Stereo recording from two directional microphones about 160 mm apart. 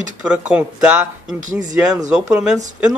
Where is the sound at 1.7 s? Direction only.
25° right (ahead or behind).